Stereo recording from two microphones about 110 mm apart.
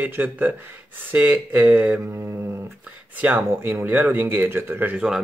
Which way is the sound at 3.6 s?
20° right (ahead or behind).